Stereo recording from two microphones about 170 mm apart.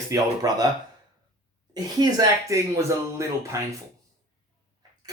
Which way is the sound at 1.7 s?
20° right (ahead or behind).